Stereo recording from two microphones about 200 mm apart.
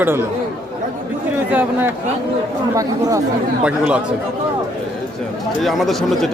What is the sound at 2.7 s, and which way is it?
Speech, 15° right (ahead or behind).